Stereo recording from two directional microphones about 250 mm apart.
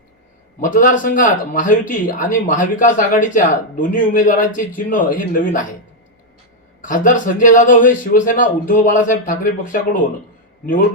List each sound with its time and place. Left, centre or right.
0.6 s speech: left
6.8 s speech: left